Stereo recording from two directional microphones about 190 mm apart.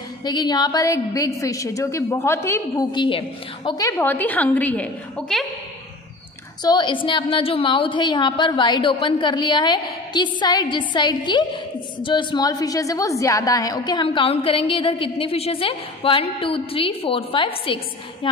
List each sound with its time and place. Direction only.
0.2 s a woman's voice: 20° left (ahead or behind); by 5.4 s 5° left (ahead or behind)
6.6 s a woman's voice: 25° left (ahead or behind)